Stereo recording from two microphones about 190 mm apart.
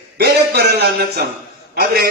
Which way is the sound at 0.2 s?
60° right (ahead or behind).